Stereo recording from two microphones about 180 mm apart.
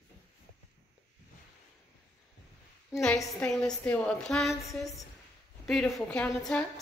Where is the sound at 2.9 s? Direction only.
5° right (ahead or behind).